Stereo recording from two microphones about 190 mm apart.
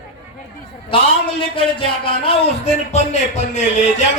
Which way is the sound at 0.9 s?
25° left (ahead or behind).